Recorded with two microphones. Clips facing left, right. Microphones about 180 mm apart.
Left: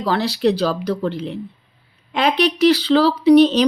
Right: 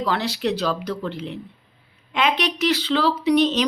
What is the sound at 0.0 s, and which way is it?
Speech, 35° left (ahead or behind).